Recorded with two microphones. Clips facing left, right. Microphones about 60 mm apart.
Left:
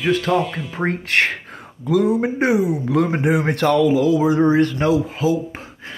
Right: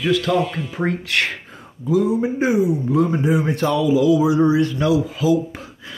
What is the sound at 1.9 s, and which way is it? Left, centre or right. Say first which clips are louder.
A man's voice: left 1 dB; left.